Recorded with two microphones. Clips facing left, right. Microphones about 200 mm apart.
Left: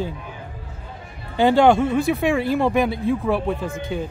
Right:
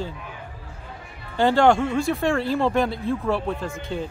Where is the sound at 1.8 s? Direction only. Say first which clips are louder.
Left 3 dB; 5° left (ahead or behind).